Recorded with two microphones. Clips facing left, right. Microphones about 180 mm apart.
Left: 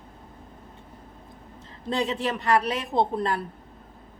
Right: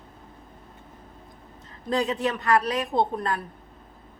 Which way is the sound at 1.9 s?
25° left (ahead or behind).